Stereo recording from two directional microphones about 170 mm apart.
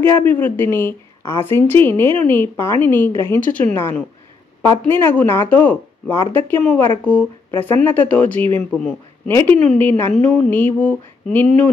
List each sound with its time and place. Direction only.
0.3 s a man's voice: 10° left (ahead or behind)